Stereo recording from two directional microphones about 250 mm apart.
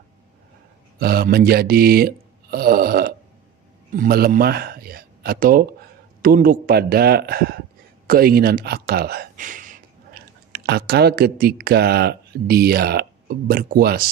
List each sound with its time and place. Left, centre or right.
0.9 s a man's voice: right